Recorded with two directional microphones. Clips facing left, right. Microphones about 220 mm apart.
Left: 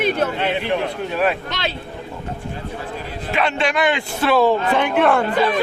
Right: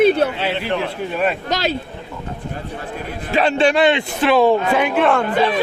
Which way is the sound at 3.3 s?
35° right (ahead or behind).